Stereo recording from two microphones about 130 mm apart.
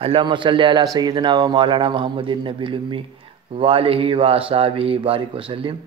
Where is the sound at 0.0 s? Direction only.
40° right (ahead or behind).